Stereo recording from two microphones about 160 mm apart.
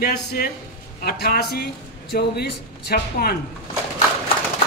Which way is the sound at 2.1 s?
90° left.